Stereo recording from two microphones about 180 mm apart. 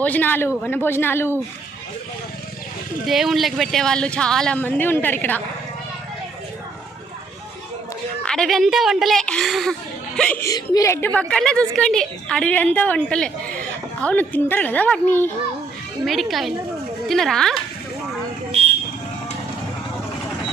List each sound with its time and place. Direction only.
0.0 s speech: 10° left (ahead or behind)
3.1 s speech: centre (ahead or behind)
8.3 s speech: centre (ahead or behind)
10.4 s speech: 20° left (ahead or behind)
16.0 s speech: centre (ahead or behind)